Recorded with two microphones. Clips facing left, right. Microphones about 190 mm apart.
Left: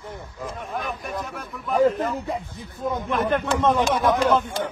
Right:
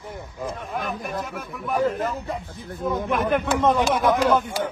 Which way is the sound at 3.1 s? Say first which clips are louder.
Even; 10° right (ahead or behind).